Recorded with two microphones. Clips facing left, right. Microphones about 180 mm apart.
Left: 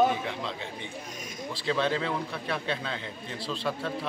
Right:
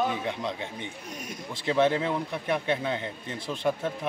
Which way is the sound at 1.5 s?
20° right (ahead or behind).